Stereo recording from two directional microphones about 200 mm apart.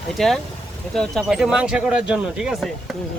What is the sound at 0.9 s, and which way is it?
Speech, centre (ahead or behind).